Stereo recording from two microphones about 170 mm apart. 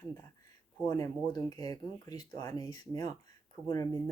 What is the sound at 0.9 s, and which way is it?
Speech, 20° left (ahead or behind).